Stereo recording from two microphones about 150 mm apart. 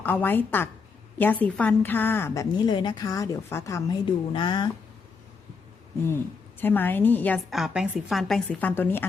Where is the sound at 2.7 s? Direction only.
30° left (ahead or behind).